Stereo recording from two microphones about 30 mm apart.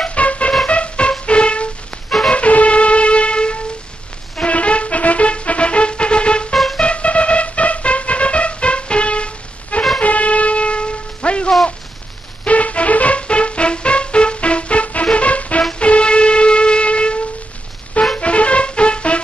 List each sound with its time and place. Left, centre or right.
0.1 s music: left
2.3 s music: left
6.5 s music: centre
6.8 s music: left
10.0 s wind instrument: left
12.4 s music: left
15.8 s wind instrument: left
18.1 s music: left